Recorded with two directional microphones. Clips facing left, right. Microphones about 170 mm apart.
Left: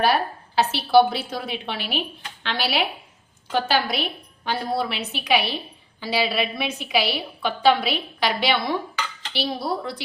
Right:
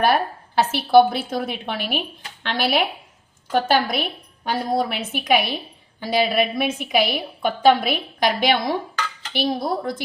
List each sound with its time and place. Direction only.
0.0 s a woman's voice: 50° right (ahead or behind)